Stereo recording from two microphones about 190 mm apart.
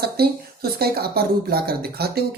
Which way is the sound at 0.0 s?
55° right (ahead or behind).